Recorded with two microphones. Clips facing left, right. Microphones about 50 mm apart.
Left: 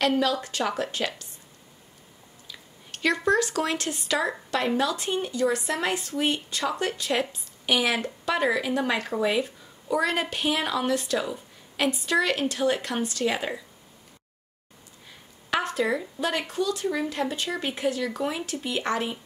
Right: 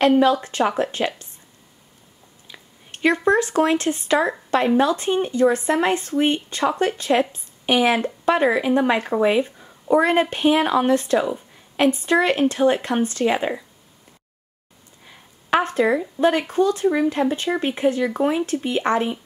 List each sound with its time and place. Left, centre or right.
0.2 s speech: right
2.4 s speech: right
15.5 s speech: right